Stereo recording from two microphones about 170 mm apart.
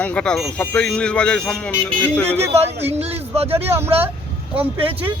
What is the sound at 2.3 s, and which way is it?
Speech, 40° right (ahead or behind).